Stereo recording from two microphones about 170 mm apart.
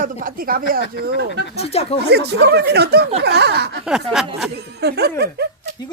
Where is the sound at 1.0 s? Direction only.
75° right (ahead or behind).